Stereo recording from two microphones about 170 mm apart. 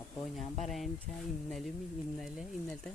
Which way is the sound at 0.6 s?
Centre (ahead or behind).